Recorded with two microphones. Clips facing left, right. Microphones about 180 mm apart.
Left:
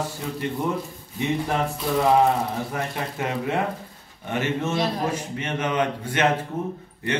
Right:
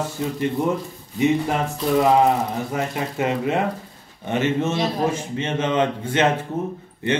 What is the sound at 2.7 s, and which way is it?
A man's voice, 20° right (ahead or behind).